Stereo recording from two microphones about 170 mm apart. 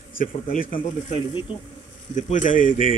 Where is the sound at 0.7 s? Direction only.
30° left (ahead or behind).